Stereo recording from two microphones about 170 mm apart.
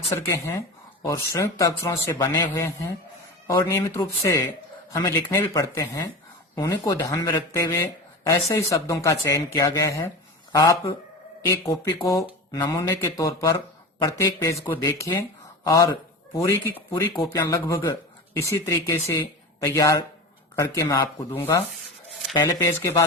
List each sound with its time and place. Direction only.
0.1 s speech: 15° left (ahead or behind)